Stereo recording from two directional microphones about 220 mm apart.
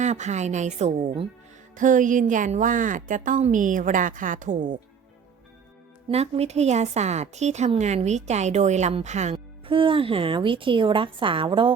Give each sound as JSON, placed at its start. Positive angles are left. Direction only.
{"t": 0.0, "sound": "a woman's voice", "side_deg": -30}
{"t": 6.1, "sound": "a woman's voice", "side_deg": -30}